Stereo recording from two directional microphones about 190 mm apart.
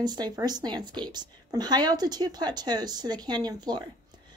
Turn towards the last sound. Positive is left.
turn(degrees=-20)  # may be behind; listen again after turning